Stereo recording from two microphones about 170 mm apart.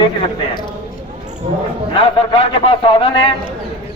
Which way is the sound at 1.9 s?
30° left (ahead or behind).